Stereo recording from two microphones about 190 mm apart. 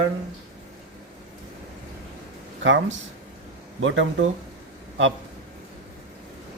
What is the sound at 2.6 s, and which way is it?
Speech, 80° right.